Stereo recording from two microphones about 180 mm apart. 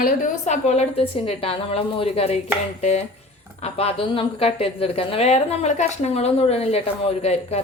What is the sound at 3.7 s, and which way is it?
A woman's voice, 30° left (ahead or behind).